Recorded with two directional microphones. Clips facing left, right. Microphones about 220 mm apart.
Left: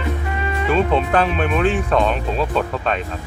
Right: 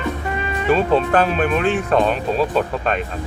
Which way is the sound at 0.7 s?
40° right (ahead or behind).